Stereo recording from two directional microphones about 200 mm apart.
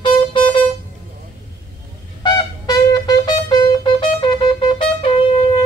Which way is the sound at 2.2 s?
20° left (ahead or behind).